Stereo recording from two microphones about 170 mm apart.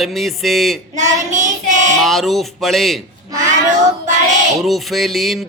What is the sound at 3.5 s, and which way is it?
Child singing, 45° right (ahead or behind).